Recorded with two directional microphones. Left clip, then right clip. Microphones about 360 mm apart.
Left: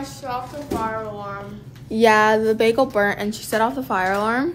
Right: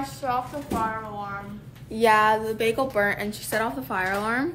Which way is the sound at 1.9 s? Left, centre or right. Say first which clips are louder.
Left 4 dB; left.